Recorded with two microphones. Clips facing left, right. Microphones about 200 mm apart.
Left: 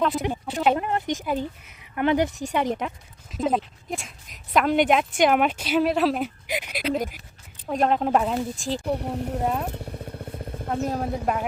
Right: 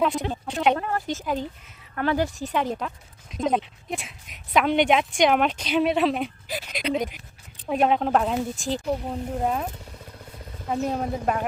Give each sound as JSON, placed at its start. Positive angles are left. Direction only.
{"t": 0.2, "sound": "speech", "side_deg": 10}
{"t": 0.8, "sound": "speech", "side_deg": 20}
{"t": 1.2, "sound": "speech", "side_deg": 10}
{"t": 3.3, "sound": "a woman's voice", "side_deg": 0}
{"t": 6.5, "sound": "a woman's voice", "side_deg": 15}
{"t": 10.7, "sound": "a woman's voice", "side_deg": 0}